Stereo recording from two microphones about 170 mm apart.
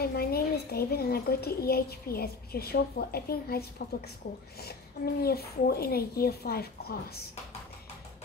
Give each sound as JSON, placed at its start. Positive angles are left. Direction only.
{"t": 0.0, "sound": "a woman's voice", "side_deg": 65}